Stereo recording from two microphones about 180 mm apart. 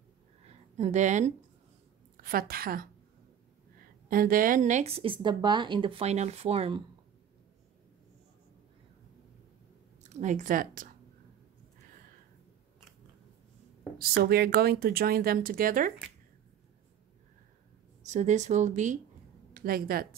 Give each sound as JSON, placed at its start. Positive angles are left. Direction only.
{"t": 0.5, "sound": "a sound", "side_deg": -40}
{"t": 2.1, "sound": "a woman's voice", "side_deg": -55}
{"t": 4.1, "sound": "speech", "side_deg": -50}
{"t": 10.0, "sound": "speech", "side_deg": -40}
{"t": 13.9, "sound": "speech", "side_deg": -60}
{"t": 18.0, "sound": "speech", "side_deg": -40}
{"t": 19.5, "sound": "speech", "side_deg": -55}